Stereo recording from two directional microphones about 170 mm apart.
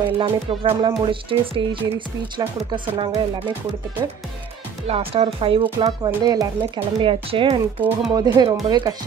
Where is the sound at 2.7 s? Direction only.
30° right (ahead or behind).